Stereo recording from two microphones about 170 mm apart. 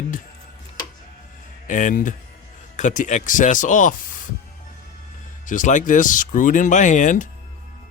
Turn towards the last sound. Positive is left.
turn(degrees=50)  # may be behind; listen again after turning